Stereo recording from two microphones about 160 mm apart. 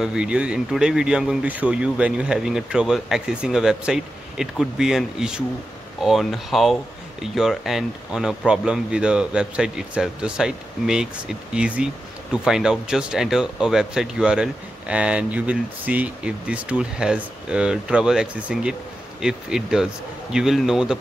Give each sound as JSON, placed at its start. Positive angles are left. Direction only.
{"t": 0.0, "sound": "speech", "side_deg": -5}